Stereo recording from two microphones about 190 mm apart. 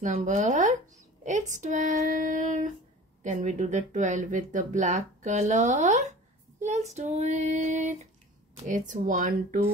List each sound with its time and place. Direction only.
0.0 s speech: 40° right (ahead or behind)